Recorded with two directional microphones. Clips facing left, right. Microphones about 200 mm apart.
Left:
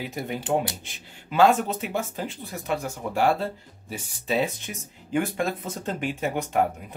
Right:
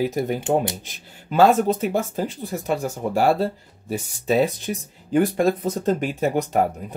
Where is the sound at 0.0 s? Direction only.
40° right (ahead or behind).